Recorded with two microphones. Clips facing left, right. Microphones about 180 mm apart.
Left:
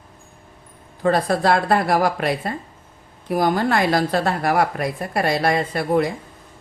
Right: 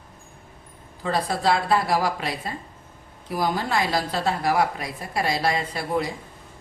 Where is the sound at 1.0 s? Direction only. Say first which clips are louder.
Left 5 dB; 55° left (ahead or behind).